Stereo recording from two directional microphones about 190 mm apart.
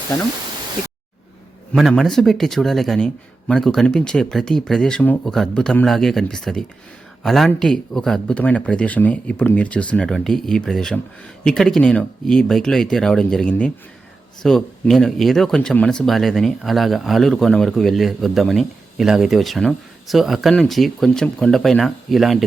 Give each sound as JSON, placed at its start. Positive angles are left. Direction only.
{"t": 1.7, "sound": "speech", "side_deg": 0}